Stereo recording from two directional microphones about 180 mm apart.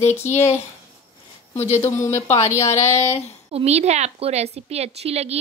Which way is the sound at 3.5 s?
35° right (ahead or behind).